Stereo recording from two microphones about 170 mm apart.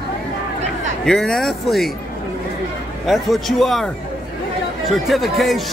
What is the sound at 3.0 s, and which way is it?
Speech, centre (ahead or behind).